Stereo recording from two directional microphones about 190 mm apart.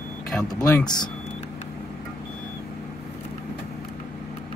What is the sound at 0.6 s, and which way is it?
Speech, 20° left (ahead or behind).